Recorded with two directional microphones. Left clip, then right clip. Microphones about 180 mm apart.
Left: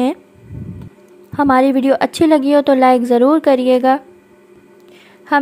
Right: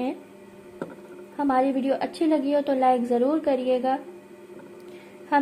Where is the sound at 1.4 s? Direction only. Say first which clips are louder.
Left 10 dB; 35° left (ahead or behind).